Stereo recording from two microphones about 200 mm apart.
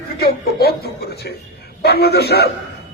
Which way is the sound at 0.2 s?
50° left (ahead or behind).